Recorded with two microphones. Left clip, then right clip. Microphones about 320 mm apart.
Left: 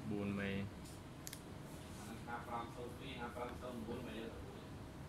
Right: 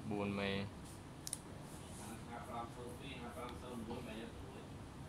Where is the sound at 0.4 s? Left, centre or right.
Centre.